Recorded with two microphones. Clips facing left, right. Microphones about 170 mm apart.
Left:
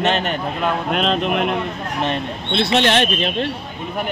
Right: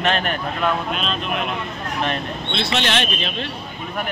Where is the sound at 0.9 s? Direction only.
65° left (ahead or behind).